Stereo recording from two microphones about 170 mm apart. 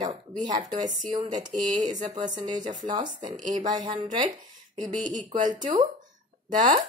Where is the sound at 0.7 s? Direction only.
50° right (ahead or behind).